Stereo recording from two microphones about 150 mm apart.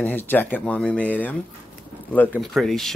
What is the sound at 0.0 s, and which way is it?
Speech, 15° left (ahead or behind).